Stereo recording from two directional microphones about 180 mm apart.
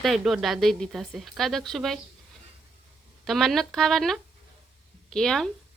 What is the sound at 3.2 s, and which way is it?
A woman's voice, centre (ahead or behind).